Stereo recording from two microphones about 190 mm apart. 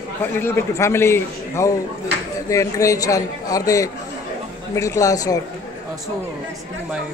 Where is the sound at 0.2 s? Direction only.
10° left (ahead or behind).